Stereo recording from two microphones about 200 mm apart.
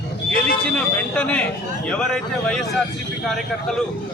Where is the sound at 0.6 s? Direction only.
5° left (ahead or behind).